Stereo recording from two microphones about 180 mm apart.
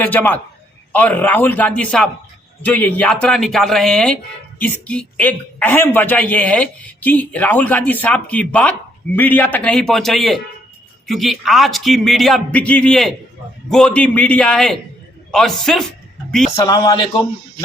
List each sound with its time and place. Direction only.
0.0 s a man's voice: 10° left (ahead or behind)
16.6 s a man's voice: 20° left (ahead or behind)